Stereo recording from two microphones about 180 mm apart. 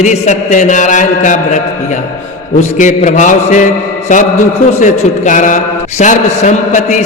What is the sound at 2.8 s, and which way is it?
Speech, 45° left (ahead or behind).